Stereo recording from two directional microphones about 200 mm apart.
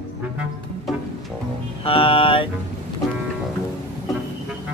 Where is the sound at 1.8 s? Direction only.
25° left (ahead or behind).